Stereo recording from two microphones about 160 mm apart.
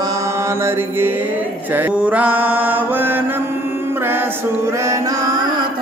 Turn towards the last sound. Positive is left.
turn(degrees=-25)  # may be behind; listen again after turning